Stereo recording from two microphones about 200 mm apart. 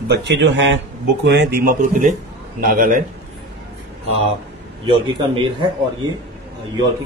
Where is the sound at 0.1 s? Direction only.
60° right (ahead or behind).